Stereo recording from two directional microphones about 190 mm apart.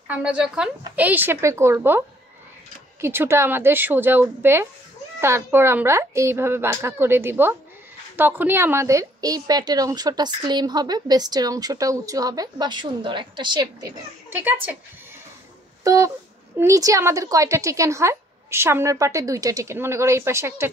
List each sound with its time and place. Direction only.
0.1 s a woman's voice: 5° right (ahead or behind)
15.8 s a sound: 15° right (ahead or behind)
16.5 s a woman's voice: 15° right (ahead or behind)